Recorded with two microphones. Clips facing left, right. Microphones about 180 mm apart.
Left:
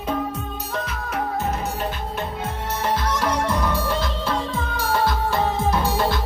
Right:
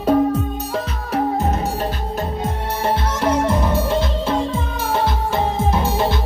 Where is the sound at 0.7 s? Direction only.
35° right (ahead or behind).